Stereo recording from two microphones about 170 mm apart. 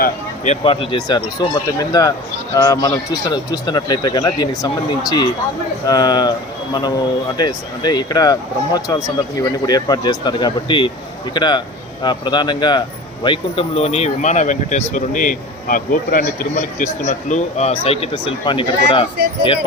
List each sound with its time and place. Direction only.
0.4 s speech: 35° left (ahead or behind)
7.3 s speech: 25° left (ahead or behind)